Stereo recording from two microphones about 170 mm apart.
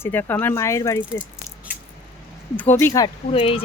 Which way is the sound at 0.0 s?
10° left (ahead or behind).